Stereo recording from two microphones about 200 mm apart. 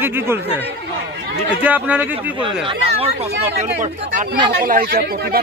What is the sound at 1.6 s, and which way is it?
Speech, 10° right (ahead or behind).